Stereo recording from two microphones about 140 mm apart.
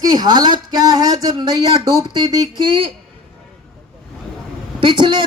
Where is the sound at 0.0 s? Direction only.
30° right (ahead or behind).